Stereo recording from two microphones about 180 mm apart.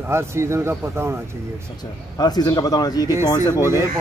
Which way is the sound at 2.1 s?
20° left (ahead or behind).